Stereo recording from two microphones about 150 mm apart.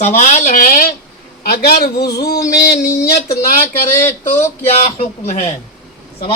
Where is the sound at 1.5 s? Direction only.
90° left.